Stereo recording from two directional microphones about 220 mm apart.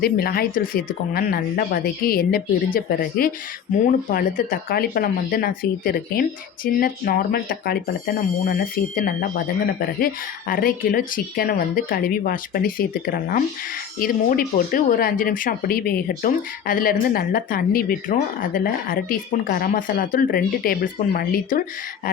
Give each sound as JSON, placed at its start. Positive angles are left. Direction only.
{"t": 0.0, "sound": "speech", "side_deg": 45}
{"t": 10.5, "sound": "speech", "side_deg": 40}